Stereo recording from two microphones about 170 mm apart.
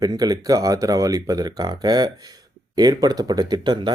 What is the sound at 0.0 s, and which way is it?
Speech, 20° right (ahead or behind).